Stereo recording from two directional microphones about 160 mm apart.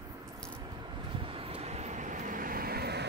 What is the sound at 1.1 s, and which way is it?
Vehicle, 35° right (ahead or behind).